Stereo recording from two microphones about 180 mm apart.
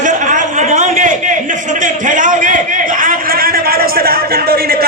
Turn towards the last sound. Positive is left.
turn(degrees=-55)  # may be behind; listen again after turning